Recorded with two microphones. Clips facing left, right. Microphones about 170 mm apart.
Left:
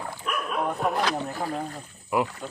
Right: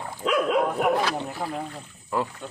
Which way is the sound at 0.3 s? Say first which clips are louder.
Right 7 dB; 90° right.